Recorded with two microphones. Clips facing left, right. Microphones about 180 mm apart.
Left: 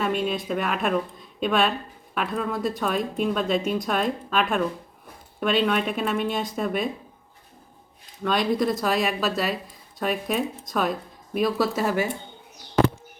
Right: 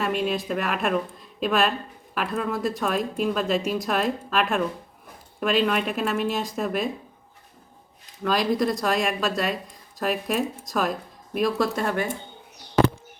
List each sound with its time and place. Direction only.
0.0 s speech: centre (ahead or behind)
8.2 s speech: centre (ahead or behind)